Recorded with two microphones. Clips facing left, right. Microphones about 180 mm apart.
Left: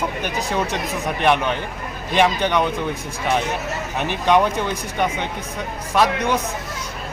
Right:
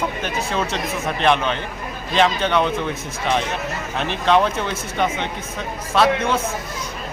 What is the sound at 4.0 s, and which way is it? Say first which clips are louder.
Speech: even; 10° left (ahead or behind).